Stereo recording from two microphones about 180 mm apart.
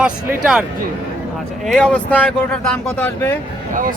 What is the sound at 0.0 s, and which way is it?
Speech, 5° right (ahead or behind).